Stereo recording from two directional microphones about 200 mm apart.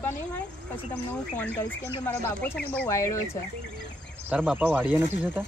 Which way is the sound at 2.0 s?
10° left (ahead or behind).